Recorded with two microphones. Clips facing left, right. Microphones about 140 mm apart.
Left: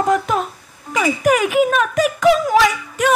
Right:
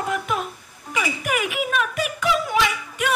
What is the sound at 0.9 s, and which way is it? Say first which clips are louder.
A woman's voice: left 9 dB; 40° left (ahead or behind).